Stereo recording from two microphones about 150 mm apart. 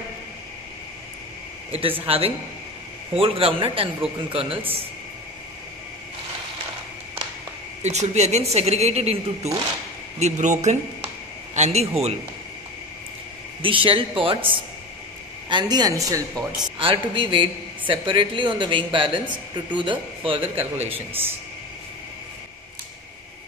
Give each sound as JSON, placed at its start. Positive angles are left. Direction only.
{"t": 1.7, "sound": "a man's voice", "side_deg": -40}
{"t": 7.8, "sound": "a woman's voice", "side_deg": -50}
{"t": 13.6, "sound": "a man's voice", "side_deg": -35}
{"t": 20.9, "sound": "a man's voice", "side_deg": -15}